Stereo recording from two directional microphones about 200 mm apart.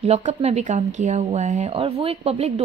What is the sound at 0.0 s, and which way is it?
A woman's voice, 35° right (ahead or behind).